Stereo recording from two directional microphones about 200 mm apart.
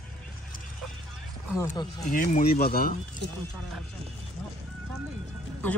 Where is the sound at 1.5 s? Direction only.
15° left (ahead or behind).